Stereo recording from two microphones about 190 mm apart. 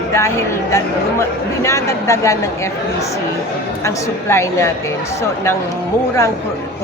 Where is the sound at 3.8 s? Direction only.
15° left (ahead or behind).